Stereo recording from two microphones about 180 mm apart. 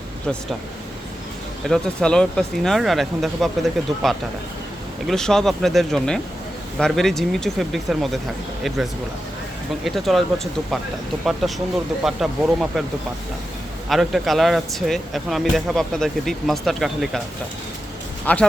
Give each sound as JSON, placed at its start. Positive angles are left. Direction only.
{"t": 1.6, "sound": "speech", "side_deg": 5}
{"t": 9.8, "sound": "speech", "side_deg": 0}
{"t": 13.9, "sound": "speech", "side_deg": 0}
{"t": 18.3, "sound": "speech", "side_deg": 10}